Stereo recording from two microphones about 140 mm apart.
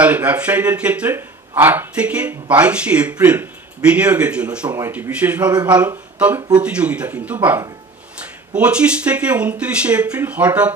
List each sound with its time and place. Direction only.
0.0 s speech: 10° right (ahead or behind)
4.7 s speech: 20° right (ahead or behind)
5.5 s speech: 30° right (ahead or behind)
5.8 s speech: 10° right (ahead or behind)